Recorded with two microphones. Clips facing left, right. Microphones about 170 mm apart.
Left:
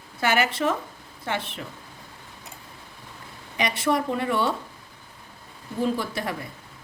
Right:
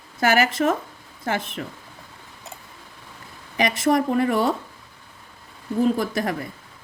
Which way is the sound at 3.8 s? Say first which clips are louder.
Right 5 dB; 45° right (ahead or behind).